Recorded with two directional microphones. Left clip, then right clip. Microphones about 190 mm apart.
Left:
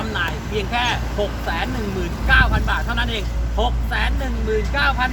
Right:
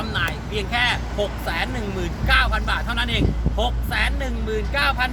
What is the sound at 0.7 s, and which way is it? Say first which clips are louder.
Speech: right 1 dB; 25° right (ahead or behind).